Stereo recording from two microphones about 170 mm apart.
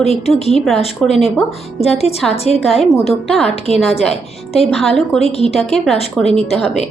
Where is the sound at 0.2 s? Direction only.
40° left (ahead or behind).